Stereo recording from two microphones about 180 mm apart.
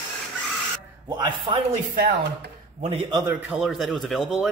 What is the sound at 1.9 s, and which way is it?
Speech, 60° right (ahead or behind).